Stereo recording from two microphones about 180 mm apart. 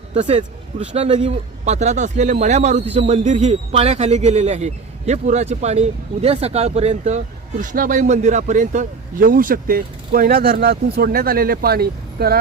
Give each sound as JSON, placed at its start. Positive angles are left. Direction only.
{"t": 0.1, "sound": "speech", "side_deg": -40}